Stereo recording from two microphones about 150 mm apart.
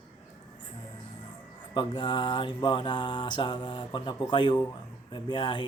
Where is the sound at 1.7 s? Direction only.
30° left (ahead or behind).